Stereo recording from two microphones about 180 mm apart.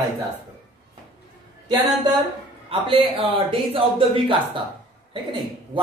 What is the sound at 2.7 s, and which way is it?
Speech, 30° right (ahead or behind).